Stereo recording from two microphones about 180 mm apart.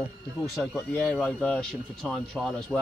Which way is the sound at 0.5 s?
Centre (ahead or behind).